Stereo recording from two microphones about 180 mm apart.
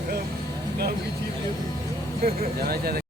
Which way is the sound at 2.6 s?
60° right (ahead or behind).